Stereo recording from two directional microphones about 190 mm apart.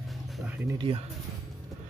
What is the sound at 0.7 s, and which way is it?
Speech, 25° right (ahead or behind).